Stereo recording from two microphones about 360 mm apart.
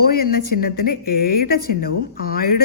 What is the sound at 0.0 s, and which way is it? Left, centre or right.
Speech, left.